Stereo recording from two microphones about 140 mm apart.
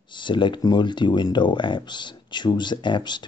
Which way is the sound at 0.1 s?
35° left (ahead or behind).